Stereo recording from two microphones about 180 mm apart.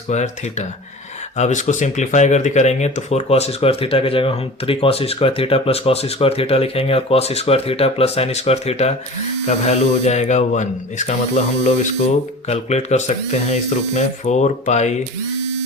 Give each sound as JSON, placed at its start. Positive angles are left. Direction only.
{"t": 0.1, "sound": "speech", "side_deg": 40}